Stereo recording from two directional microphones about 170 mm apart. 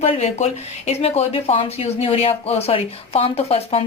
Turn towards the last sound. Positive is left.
turn(degrees=35)  # may be behind; listen again after turning